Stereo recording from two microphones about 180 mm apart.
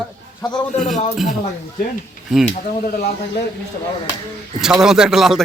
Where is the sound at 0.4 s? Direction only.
25° left (ahead or behind).